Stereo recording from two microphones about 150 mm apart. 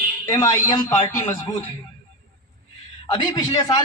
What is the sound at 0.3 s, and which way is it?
Speech, 20° left (ahead or behind).